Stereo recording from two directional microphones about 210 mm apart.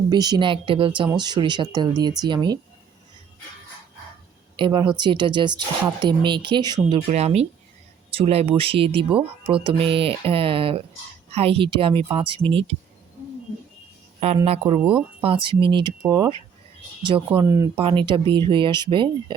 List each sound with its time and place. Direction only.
0.1 s speech: 20° right (ahead or behind)
4.5 s speech: 25° right (ahead or behind)
7.1 s speech: 30° right (ahead or behind)
14.4 s speech: 30° right (ahead or behind)
17.4 s speech: 15° right (ahead or behind)